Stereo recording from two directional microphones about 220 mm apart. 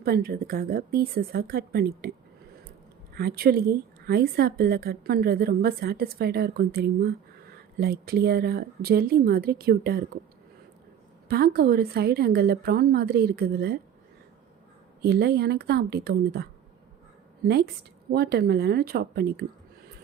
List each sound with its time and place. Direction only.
0.0 s a woman's voice: 45° right (ahead or behind)
3.2 s a woman's voice: 45° right (ahead or behind)
11.3 s a woman's voice: 45° right (ahead or behind)
15.0 s a woman's voice: 45° right (ahead or behind)
18.1 s a woman's voice: 45° right (ahead or behind)